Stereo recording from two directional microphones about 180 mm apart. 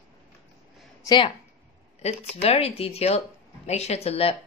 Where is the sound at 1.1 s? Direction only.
25° left (ahead or behind).